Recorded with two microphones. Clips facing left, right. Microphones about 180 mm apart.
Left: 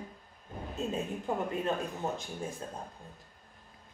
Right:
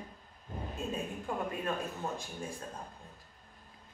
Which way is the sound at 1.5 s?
20° left (ahead or behind).